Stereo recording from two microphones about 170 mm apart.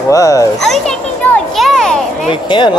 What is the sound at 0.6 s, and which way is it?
Speech, centre (ahead or behind).